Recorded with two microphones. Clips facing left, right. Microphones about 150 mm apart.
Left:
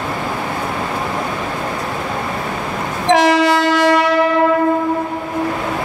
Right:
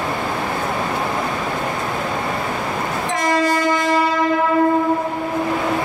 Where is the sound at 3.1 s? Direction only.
90° left.